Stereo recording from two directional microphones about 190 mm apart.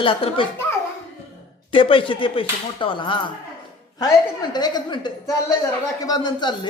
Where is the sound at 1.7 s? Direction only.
30° left (ahead or behind).